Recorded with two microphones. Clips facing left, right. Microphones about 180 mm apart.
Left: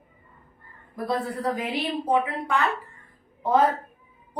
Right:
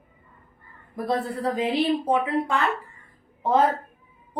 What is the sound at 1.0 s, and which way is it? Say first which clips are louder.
A woman's voice: right 1 dB; 25° right (ahead or behind).